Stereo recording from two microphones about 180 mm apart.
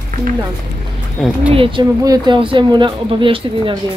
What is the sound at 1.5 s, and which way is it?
Speech, 30° right (ahead or behind).